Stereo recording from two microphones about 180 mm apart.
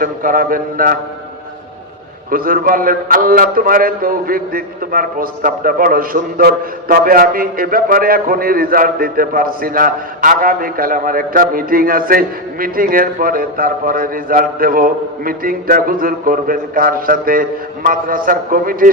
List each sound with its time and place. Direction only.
0.0 s a man's voice: 50° right (ahead or behind)
2.3 s a man's voice: 50° right (ahead or behind)